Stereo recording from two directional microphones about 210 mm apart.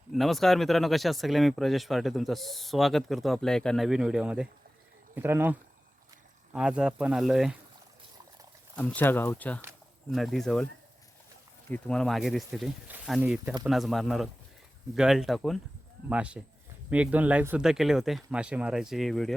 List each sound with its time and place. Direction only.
0.1 s speech: centre (ahead or behind)
8.7 s speech: 5° left (ahead or behind)
11.7 s speech: 5° left (ahead or behind)